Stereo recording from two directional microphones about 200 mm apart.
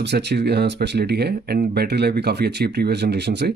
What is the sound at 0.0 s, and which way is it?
Speech, 55° right (ahead or behind).